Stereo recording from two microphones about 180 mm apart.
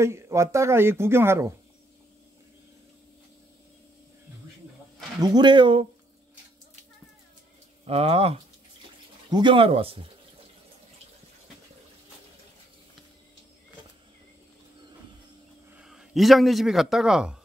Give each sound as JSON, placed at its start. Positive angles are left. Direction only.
{"t": 0.0, "sound": "speech", "side_deg": -15}
{"t": 5.2, "sound": "speech", "side_deg": -25}
{"t": 7.8, "sound": "speech", "side_deg": -35}
{"t": 15.8, "sound": "a man's voice", "side_deg": -5}